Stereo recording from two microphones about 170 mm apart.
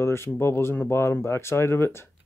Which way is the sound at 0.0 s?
15° left (ahead or behind).